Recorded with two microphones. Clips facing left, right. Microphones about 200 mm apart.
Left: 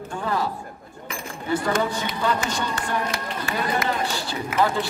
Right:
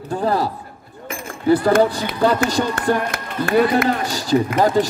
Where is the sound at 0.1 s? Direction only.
35° right (ahead or behind).